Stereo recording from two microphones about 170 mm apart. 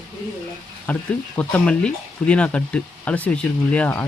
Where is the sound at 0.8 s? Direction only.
10° left (ahead or behind).